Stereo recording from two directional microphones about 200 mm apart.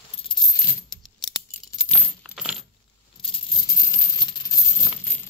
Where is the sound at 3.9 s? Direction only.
20° left (ahead or behind).